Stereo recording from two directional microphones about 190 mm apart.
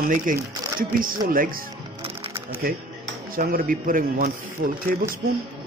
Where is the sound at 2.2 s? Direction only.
30° right (ahead or behind).